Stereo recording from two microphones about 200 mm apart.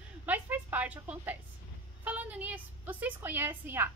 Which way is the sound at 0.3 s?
10° right (ahead or behind).